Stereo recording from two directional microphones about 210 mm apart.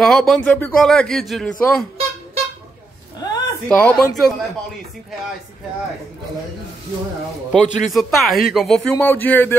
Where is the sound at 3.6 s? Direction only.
5° left (ahead or behind).